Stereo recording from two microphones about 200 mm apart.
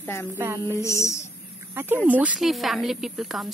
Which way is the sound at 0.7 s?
15° left (ahead or behind).